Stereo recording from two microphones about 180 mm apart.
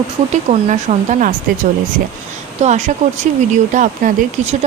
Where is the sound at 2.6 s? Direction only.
40° right (ahead or behind).